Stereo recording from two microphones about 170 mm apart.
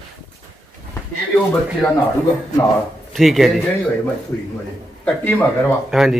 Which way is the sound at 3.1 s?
Centre (ahead or behind).